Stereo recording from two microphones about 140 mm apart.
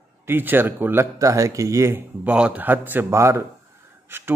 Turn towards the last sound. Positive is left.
turn(degrees=-15)  # may be behind; listen again after turning